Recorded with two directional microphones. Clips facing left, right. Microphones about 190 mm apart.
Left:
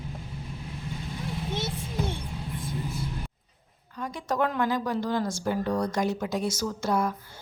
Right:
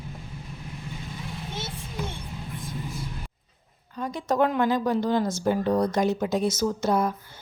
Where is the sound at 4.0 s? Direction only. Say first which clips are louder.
Right 4 dB; 25° right (ahead or behind).